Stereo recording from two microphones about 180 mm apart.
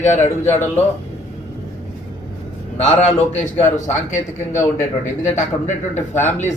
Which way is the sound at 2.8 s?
40° left (ahead or behind).